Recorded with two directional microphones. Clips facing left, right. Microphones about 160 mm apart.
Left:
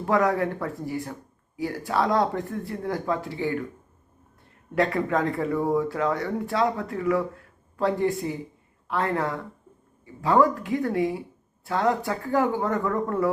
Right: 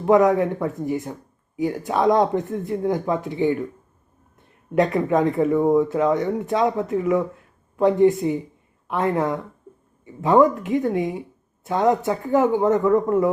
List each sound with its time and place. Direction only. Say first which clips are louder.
0.1 s speech: right 7 dB; 20° right (ahead or behind)
4.7 s speech: right 5 dB; 20° right (ahead or behind)